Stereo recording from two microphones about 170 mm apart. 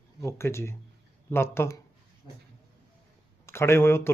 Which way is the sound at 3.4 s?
15° left (ahead or behind).